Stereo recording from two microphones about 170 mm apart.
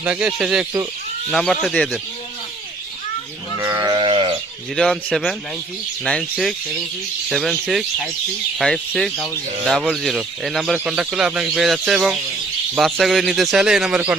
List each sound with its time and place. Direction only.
0.0 s speech: 10° right (ahead or behind)
3.6 s livestock: 20° right (ahead or behind)
4.7 s speech: 5° left (ahead or behind)
7.3 s speech: centre (ahead or behind)